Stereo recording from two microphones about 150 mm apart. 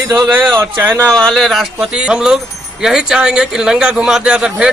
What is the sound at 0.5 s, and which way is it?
Speech, 20° right (ahead or behind).